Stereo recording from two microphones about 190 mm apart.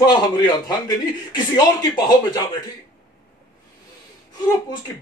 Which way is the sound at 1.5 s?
20° left (ahead or behind).